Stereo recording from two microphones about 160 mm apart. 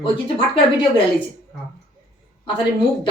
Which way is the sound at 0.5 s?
30° left (ahead or behind).